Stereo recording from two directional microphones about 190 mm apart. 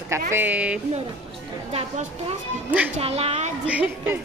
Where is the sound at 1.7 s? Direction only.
30° right (ahead or behind).